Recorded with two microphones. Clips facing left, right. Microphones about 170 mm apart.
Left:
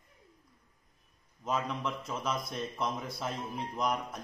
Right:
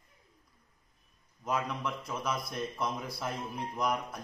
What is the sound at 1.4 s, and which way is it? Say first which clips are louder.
A man's voice: even; centre (ahead or behind).